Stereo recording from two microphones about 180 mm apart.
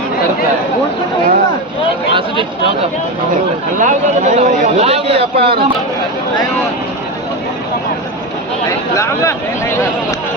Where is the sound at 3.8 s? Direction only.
40° right (ahead or behind).